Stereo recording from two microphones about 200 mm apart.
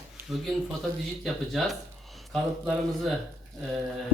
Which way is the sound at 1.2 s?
Centre (ahead or behind).